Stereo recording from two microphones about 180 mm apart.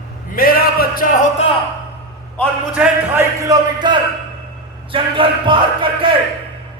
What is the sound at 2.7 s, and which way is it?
A man's voice, 15° right (ahead or behind).